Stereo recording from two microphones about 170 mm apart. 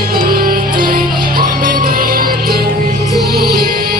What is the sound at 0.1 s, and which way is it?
Music, 60° right (ahead or behind).